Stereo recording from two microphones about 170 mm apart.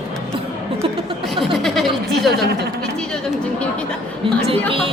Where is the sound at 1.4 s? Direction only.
Centre (ahead or behind).